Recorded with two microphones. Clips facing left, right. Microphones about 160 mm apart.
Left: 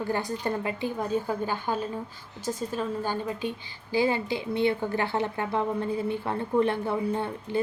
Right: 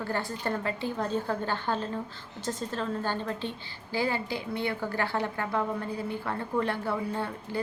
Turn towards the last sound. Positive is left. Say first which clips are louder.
# left 4 dB
turn(degrees=20)  # may be behind; listen again after turning